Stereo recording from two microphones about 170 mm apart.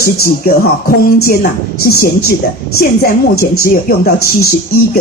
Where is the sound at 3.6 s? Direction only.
65° left (ahead or behind).